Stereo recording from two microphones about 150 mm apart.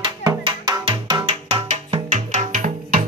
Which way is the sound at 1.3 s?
45° right (ahead or behind).